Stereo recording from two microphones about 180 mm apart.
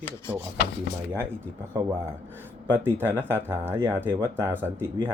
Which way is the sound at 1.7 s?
15° right (ahead or behind).